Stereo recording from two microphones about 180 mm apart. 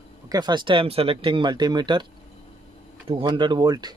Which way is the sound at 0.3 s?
25° right (ahead or behind).